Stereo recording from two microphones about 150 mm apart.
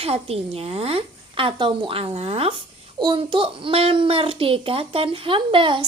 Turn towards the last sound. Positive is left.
turn(degrees=-35)  # may be behind; listen again after turning